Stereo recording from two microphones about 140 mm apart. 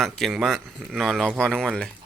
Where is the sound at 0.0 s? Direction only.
Centre (ahead or behind).